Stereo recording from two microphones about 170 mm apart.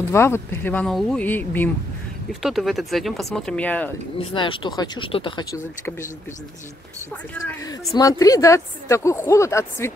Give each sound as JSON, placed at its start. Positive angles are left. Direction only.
{"t": 0.1, "sound": "a woman's voice", "side_deg": 15}
{"t": 2.4, "sound": "speech", "side_deg": 0}
{"t": 4.2, "sound": "speech", "side_deg": 30}
{"t": 7.3, "sound": "a woman's voice", "side_deg": 20}